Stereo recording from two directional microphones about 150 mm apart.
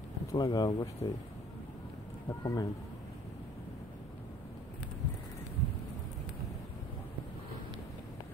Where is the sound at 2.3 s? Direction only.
25° left (ahead or behind).